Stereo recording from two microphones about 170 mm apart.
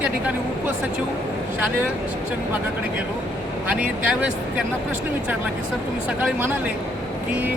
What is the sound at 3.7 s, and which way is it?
Speech, 5° right (ahead or behind).